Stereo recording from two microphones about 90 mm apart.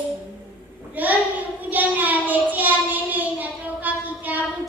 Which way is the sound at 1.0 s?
20° right (ahead or behind).